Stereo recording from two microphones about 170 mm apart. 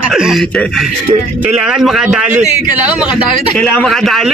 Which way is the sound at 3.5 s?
5° left (ahead or behind).